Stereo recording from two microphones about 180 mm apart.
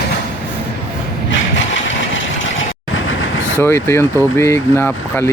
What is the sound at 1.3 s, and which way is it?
Vehicle, 90° left.